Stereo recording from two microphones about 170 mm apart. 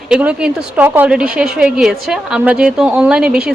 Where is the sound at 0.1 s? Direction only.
5° right (ahead or behind).